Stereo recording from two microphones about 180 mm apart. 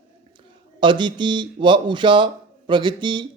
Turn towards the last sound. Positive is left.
turn(degrees=-25)  # may be behind; listen again after turning